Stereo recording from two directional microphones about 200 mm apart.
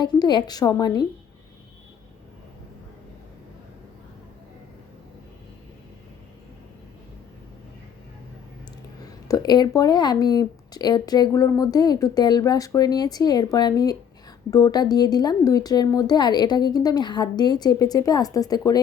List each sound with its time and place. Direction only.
0.0 s speech: 20° left (ahead or behind)
9.2 s speech: 20° left (ahead or behind)